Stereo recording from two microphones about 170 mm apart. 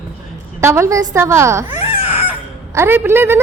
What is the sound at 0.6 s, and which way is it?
A woman's voice, 15° right (ahead or behind).